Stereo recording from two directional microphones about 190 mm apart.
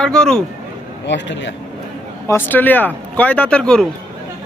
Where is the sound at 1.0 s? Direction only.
70° left (ahead or behind).